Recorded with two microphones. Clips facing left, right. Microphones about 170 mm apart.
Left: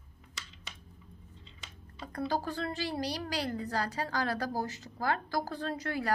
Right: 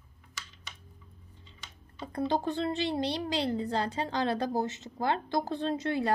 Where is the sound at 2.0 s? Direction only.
25° right (ahead or behind).